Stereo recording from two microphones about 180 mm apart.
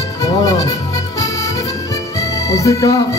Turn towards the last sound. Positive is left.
turn(degrees=20)  # may be behind; listen again after turning